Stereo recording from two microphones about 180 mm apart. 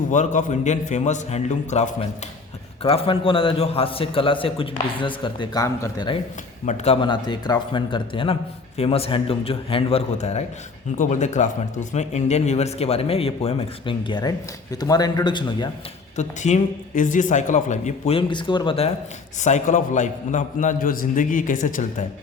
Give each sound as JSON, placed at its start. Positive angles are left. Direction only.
{"t": 0.1, "sound": "a man's voice", "side_deg": 45}
{"t": 6.7, "sound": "a man's voice", "side_deg": 35}
{"t": 16.1, "sound": "speech", "side_deg": 40}
{"t": 19.4, "sound": "a man's voice", "side_deg": 40}